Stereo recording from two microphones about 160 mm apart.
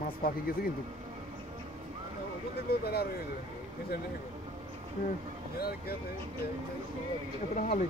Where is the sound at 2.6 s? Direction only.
80° left.